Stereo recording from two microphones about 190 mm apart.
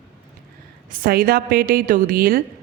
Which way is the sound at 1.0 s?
50° right (ahead or behind).